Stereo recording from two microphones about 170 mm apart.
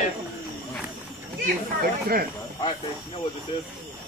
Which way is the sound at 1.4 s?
60° right (ahead or behind).